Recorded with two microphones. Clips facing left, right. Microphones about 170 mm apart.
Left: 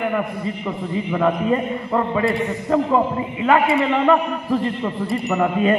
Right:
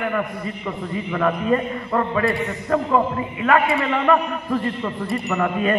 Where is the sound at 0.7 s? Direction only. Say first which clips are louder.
Left 2 dB; 15° left (ahead or behind).